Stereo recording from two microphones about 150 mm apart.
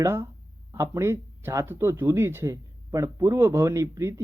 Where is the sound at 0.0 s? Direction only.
20° right (ahead or behind).